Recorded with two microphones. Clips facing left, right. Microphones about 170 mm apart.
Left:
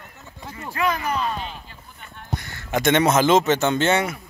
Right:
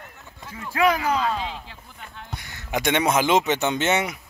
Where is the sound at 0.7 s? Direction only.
90° right.